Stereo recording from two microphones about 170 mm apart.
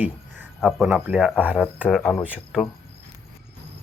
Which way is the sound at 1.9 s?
5° left (ahead or behind).